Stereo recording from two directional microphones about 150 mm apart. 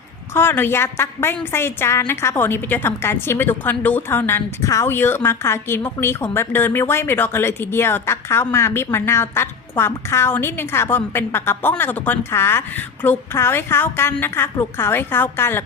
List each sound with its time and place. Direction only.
0.3 s a woman's voice: 15° left (ahead or behind)